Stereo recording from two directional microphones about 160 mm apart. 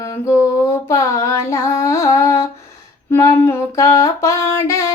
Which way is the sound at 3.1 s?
20° left (ahead or behind).